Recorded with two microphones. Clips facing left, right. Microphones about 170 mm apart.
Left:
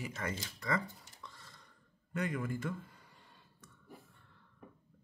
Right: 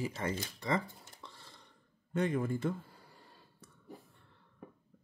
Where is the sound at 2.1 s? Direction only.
30° right (ahead or behind).